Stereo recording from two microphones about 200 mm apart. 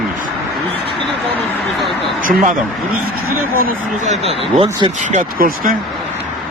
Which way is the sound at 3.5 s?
40° right (ahead or behind).